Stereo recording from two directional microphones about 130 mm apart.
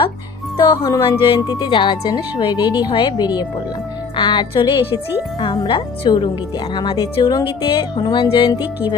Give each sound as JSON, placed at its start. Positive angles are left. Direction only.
{"t": 0.5, "sound": "speech", "side_deg": 30}